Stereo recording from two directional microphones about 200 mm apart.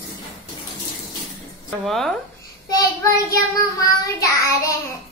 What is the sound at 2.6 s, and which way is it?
Speech, 15° left (ahead or behind).